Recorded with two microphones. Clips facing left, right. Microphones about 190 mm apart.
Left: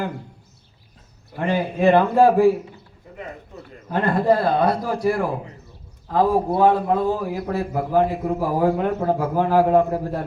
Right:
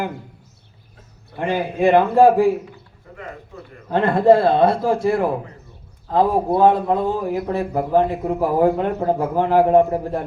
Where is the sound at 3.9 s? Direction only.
25° right (ahead or behind).